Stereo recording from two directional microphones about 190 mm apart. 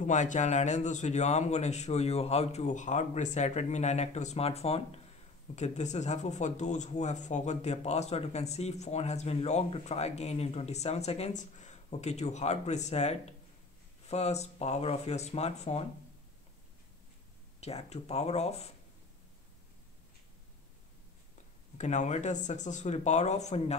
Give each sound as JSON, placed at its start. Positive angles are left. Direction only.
{"t": 0.0, "sound": "speech", "side_deg": 40}
{"t": 17.6, "sound": "speech", "side_deg": 35}
{"t": 21.7, "sound": "speech", "side_deg": 35}